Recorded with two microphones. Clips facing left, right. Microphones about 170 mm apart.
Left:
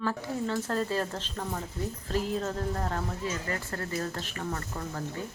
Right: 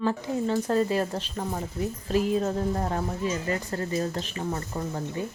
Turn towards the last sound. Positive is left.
turn(degrees=-20)  # may be behind; listen again after turning